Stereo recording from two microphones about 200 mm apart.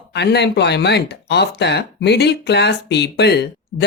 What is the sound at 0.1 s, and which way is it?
Speech, 55° left (ahead or behind).